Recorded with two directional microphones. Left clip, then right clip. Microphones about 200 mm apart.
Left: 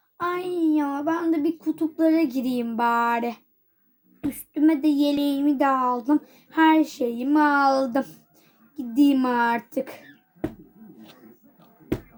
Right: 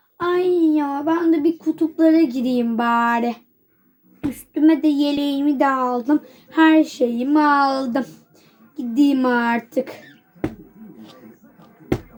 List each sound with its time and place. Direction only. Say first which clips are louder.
0.2 s speech: right 7 dB; 30° left (ahead or behind)
4.6 s speech: right 4 dB; 30° left (ahead or behind)